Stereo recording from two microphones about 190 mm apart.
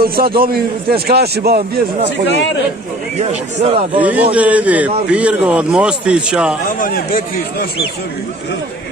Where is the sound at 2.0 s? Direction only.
65° left (ahead or behind).